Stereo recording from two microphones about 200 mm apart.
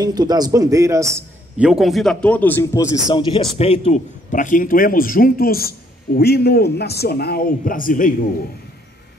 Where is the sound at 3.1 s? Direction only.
20° left (ahead or behind); by 8.1 s 45° left (ahead or behind).